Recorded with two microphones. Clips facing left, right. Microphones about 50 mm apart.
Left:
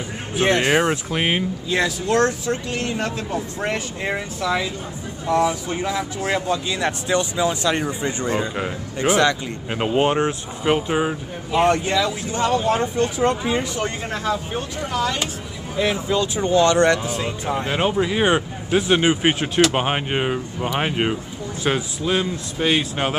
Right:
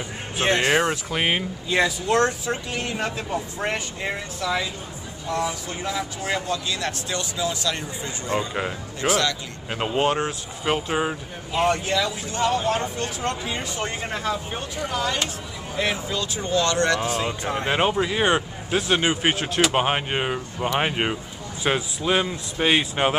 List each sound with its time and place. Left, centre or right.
0.5 s speech: centre
4.0 s speech: centre
6.4 s speech: left
9.7 s speech: centre
11.5 s speech: centre
11.8 s speech: centre
13.0 s speech: left
13.6 s speech: centre
16.1 s speech: left
17.2 s speech: centre